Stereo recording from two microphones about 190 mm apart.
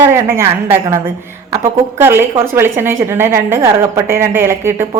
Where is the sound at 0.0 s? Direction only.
15° right (ahead or behind).